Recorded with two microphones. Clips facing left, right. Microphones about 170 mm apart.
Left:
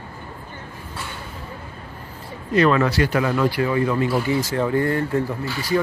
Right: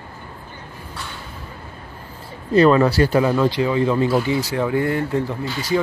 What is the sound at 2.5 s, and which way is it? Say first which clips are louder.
Speech: right 4 dB; 35° right (ahead or behind).